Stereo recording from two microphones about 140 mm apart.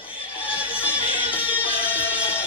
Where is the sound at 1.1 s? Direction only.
40° left (ahead or behind).